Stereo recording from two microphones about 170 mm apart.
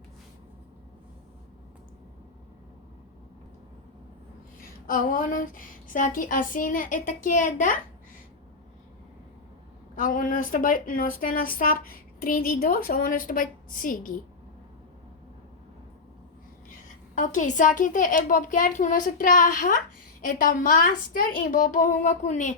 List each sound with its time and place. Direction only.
4.9 s a woman's voice: 55° left (ahead or behind)
9.9 s a woman's voice: 50° left (ahead or behind)
17.2 s a woman's voice: 50° left (ahead or behind)